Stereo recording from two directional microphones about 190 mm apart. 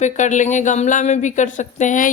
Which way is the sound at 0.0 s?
40° left (ahead or behind).